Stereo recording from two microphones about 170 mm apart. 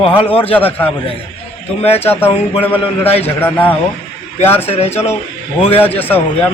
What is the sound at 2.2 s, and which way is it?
A man's voice, 10° left (ahead or behind).